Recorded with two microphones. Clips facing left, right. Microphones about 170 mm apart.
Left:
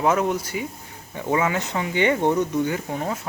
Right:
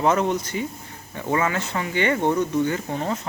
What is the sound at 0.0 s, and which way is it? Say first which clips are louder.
Speech: even; 5° left (ahead or behind).